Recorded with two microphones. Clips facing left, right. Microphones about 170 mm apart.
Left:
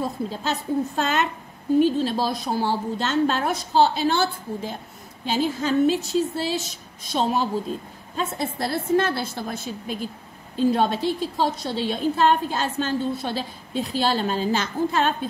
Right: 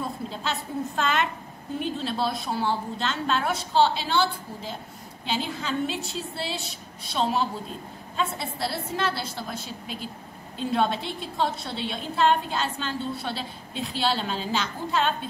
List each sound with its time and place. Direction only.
0.0 s a woman's voice: 40° left (ahead or behind)